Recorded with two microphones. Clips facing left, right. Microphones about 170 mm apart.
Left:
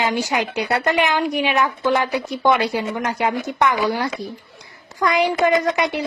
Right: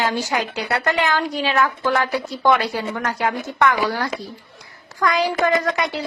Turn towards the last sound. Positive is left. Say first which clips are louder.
# left 2 dB
turn(degrees=20)  # may be behind; listen again after turning